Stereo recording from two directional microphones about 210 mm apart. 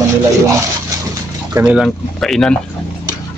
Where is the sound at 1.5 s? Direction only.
15° right (ahead or behind).